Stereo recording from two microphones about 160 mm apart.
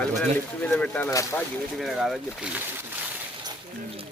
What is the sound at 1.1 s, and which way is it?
Speech, 20° left (ahead or behind).